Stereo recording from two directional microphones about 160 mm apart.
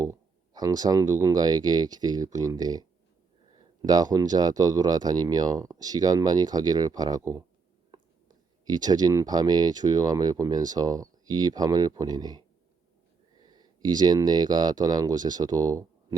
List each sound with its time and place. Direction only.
0.0 s speech: 20° right (ahead or behind)
8.6 s speech: 25° right (ahead or behind)